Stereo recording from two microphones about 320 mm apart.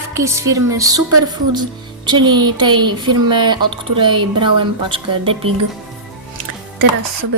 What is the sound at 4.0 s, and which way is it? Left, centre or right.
A woman's voice, centre.